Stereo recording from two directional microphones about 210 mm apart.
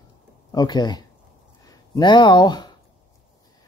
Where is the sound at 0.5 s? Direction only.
20° left (ahead or behind).